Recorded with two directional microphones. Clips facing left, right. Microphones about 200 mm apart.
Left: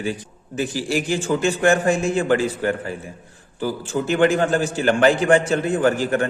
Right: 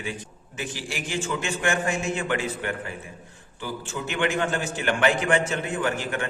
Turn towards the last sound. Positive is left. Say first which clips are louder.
# left 8 dB
turn(degrees=35)  # may be behind; listen again after turning